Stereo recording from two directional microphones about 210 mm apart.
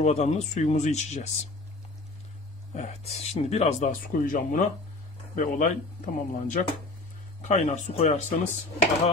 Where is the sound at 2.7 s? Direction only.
30° left (ahead or behind).